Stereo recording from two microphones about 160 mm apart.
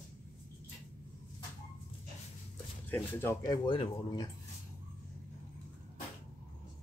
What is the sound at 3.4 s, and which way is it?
Speech, 30° left (ahead or behind).